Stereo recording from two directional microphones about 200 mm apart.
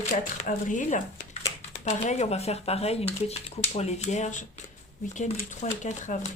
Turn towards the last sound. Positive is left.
turn(degrees=35)  # may be behind; listen again after turning